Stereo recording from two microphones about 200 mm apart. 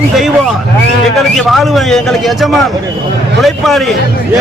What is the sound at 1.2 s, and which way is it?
Speech, centre (ahead or behind).